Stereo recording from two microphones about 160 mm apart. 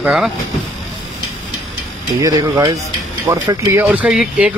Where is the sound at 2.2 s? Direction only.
20° right (ahead or behind).